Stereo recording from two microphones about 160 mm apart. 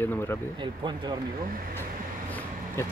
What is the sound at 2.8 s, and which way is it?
Speech, 15° left (ahead or behind).